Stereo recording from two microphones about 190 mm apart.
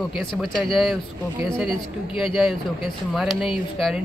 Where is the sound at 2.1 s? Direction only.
Centre (ahead or behind).